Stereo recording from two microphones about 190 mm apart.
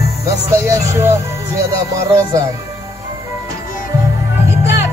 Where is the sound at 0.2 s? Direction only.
15° right (ahead or behind).